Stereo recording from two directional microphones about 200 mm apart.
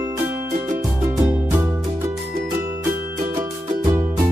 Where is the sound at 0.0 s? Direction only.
15° right (ahead or behind).